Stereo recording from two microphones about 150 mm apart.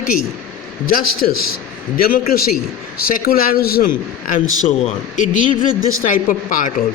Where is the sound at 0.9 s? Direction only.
75° left (ahead or behind).